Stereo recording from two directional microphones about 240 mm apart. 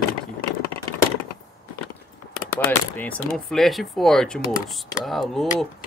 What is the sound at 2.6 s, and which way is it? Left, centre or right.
Speech, centre.